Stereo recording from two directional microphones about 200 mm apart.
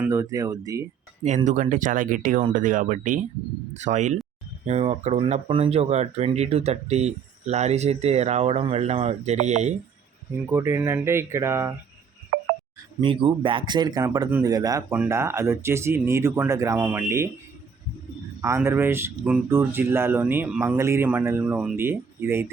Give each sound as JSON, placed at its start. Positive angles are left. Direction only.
{"t": 0.0, "sound": "speech", "side_deg": -15}
{"t": 1.5, "sound": "speech", "side_deg": -40}
{"t": 10.5, "sound": "speech", "side_deg": -15}
{"t": 12.3, "sound": "a sound", "side_deg": -50}
{"t": 13.0, "sound": "speech", "side_deg": -25}
{"t": 18.4, "sound": "speech", "side_deg": -15}